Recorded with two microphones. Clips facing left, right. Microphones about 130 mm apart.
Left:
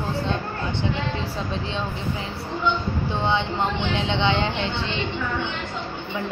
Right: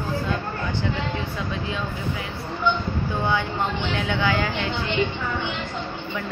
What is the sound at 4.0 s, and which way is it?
Speech, 25° left (ahead or behind).